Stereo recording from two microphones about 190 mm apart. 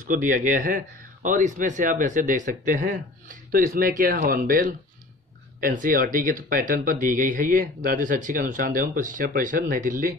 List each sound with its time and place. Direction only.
0.1 s speech: 45° right (ahead or behind)